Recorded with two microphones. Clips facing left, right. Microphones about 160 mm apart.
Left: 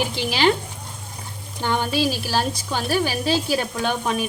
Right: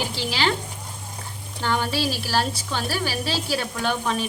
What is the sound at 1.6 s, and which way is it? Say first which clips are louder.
A woman's voice: left 2 dB; 20° left (ahead or behind).